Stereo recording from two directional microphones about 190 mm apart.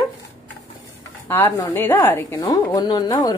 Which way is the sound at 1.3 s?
10° left (ahead or behind).